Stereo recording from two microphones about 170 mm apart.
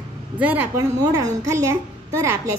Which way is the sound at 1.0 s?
20° right (ahead or behind).